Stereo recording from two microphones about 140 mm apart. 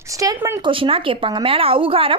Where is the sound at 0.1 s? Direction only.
25° right (ahead or behind).